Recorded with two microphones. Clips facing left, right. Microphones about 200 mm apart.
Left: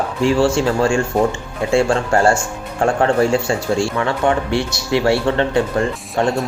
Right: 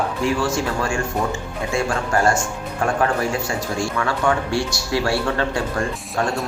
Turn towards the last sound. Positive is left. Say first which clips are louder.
# left 5 dB
turn(degrees=20)  # may be behind; listen again after turning